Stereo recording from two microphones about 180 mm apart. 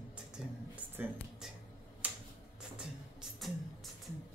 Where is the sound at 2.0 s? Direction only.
10° right (ahead or behind).